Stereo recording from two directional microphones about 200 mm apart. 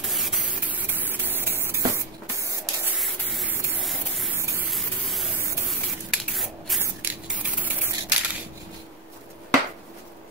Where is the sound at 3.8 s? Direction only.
Centre (ahead or behind).